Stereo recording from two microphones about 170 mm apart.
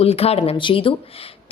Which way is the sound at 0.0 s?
35° left (ahead or behind).